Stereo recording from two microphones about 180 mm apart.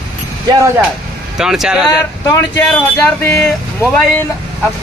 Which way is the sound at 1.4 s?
5° right (ahead or behind).